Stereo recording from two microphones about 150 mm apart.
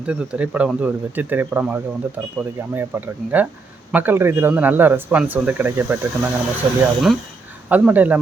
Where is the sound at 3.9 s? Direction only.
15° right (ahead or behind).